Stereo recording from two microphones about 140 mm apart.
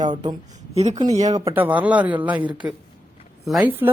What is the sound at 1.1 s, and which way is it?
Speech, 55° right (ahead or behind).